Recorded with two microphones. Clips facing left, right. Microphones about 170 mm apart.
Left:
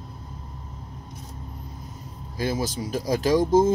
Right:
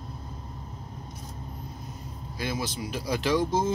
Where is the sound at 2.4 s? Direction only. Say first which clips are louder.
Left 5 dB; 40° left (ahead or behind).